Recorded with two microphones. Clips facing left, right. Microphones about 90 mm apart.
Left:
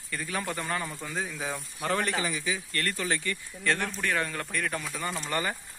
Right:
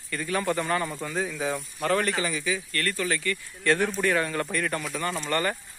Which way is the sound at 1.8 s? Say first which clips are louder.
Right 3 dB; 15° left (ahead or behind).